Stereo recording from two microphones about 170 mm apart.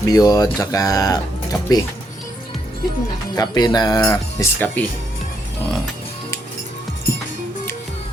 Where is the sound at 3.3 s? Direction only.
25° left (ahead or behind).